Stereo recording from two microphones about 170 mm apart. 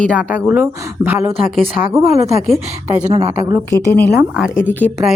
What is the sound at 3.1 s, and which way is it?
Speech, 35° right (ahead or behind).